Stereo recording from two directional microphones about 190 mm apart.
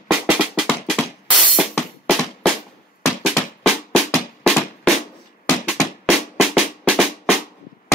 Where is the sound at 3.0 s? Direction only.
Centre (ahead or behind).